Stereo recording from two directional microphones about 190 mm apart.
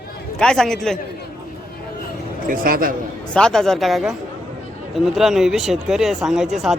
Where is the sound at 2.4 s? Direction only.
50° right (ahead or behind).